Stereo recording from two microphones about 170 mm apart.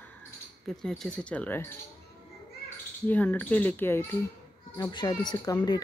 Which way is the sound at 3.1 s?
10° left (ahead or behind).